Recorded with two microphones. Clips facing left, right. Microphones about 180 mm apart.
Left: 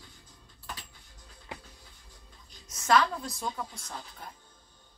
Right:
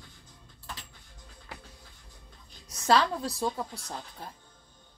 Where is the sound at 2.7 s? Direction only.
35° right (ahead or behind).